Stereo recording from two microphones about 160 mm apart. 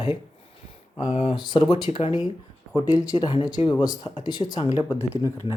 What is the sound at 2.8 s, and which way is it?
Speech, 25° left (ahead or behind).